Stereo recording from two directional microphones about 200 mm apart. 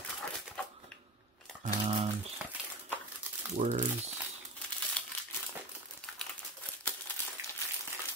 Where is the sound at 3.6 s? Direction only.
40° right (ahead or behind).